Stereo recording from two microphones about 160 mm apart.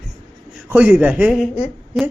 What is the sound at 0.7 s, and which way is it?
Speech, 10° right (ahead or behind).